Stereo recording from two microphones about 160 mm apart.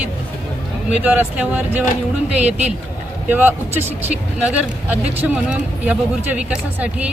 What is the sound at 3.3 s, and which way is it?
Speech, 10° right (ahead or behind).